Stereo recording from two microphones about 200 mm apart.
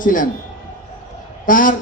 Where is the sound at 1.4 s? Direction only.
40° left (ahead or behind).